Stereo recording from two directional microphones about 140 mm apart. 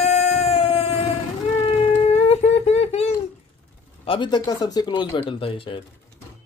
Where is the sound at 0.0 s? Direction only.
55° left (ahead or behind).